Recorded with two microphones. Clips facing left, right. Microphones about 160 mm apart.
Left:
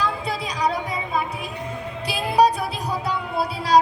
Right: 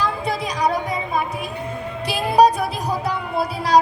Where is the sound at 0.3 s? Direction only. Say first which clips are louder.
Right 3 dB; 45° right (ahead or behind).